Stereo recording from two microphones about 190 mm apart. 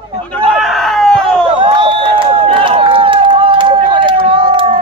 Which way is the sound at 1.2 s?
25° right (ahead or behind).